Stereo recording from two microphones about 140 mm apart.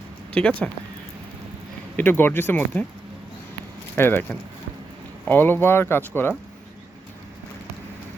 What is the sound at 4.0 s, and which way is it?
Speech, 15° left (ahead or behind).